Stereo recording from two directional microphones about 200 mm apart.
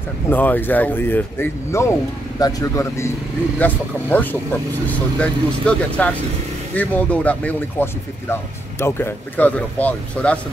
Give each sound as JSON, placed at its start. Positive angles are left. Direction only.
{"t": 0.3, "sound": "speech", "side_deg": 10}